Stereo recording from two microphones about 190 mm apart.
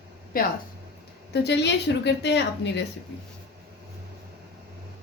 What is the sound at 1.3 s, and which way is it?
A woman's voice, 65° left (ahead or behind).